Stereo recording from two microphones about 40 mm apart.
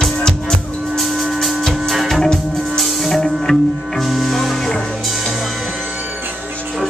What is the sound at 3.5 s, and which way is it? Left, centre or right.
Music, left.